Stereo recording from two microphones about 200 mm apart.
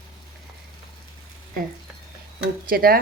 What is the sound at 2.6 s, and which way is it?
Speech, 50° right (ahead or behind).